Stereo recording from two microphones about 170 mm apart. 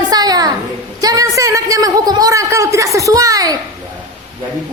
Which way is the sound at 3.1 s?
20° right (ahead or behind).